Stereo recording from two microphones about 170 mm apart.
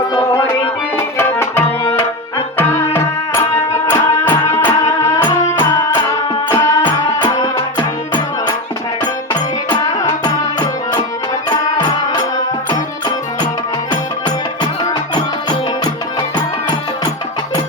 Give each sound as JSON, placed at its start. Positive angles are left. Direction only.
{"t": 0.1, "sound": "music", "side_deg": 25}
{"t": 1.2, "sound": "tabla", "side_deg": 15}
{"t": 2.6, "sound": "music", "side_deg": 15}
{"t": 9.3, "sound": "music", "side_deg": 20}
{"t": 11.4, "sound": "music", "side_deg": 25}
{"t": 15.1, "sound": "music", "side_deg": 25}